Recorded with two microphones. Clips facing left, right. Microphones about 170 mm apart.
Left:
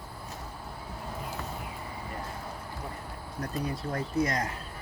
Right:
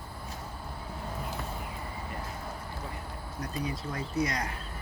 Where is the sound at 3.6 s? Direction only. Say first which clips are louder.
Left 2 dB; 55° left (ahead or behind).